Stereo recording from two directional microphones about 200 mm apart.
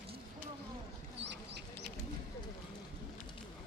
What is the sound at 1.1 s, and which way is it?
Duck, 60° right (ahead or behind).